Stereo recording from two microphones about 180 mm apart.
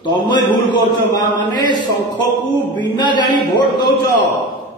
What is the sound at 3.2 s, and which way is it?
Speech, 25° left (ahead or behind).